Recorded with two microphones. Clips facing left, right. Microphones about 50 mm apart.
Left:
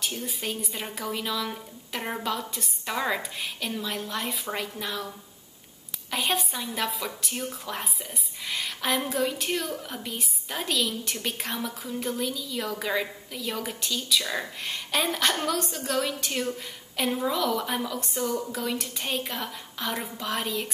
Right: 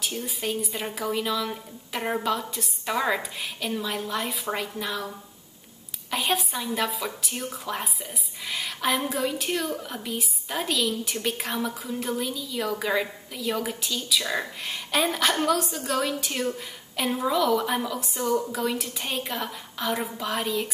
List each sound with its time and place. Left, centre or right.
0.0 s a woman's voice: centre